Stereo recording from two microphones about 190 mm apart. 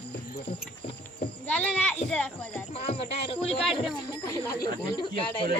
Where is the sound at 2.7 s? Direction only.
35° left (ahead or behind).